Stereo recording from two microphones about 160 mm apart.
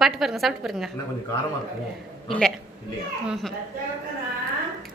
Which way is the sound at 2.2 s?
5° left (ahead or behind).